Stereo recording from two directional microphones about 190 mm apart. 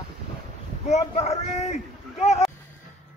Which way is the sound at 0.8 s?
35° left (ahead or behind).